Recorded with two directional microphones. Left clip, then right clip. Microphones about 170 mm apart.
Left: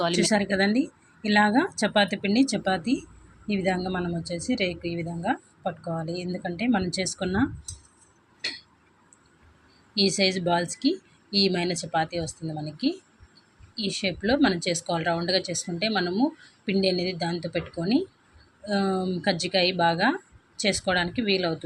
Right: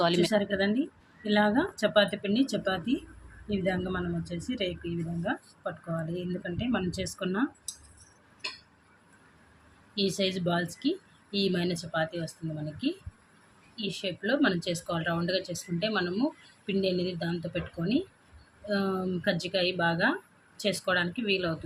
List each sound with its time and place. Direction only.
0.2 s a woman's voice: 30° left (ahead or behind)
9.9 s speech: 30° left (ahead or behind)
13.7 s speech: 25° left (ahead or behind)